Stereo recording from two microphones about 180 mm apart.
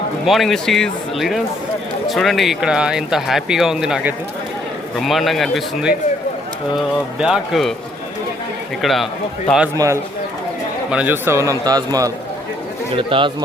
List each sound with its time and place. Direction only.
0.3 s speech: centre (ahead or behind)
7.2 s speech: centre (ahead or behind)
8.8 s speech: centre (ahead or behind)
9.7 s a man's voice: 15° right (ahead or behind)